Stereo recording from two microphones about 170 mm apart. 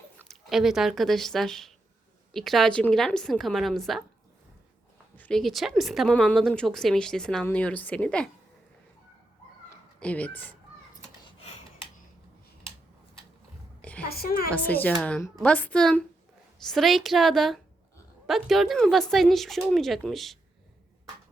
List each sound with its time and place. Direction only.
0.3 s a woman's voice: centre (ahead or behind)
5.1 s a woman's voice: 5° left (ahead or behind)
10.0 s a woman's voice: 10° left (ahead or behind)
14.0 s a woman's voice: 65° left (ahead or behind)
14.5 s a woman's voice: 10° left (ahead or behind)